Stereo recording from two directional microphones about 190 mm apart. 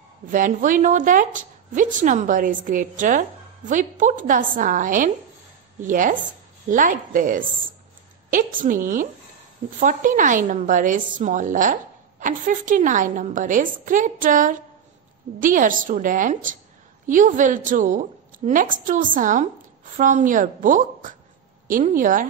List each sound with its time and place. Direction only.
0.3 s a woman's voice: 45° right (ahead or behind)